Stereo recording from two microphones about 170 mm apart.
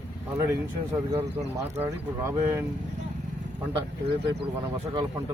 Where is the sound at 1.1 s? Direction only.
40° right (ahead or behind).